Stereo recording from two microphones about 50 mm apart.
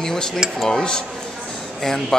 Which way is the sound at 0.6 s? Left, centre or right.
Centre.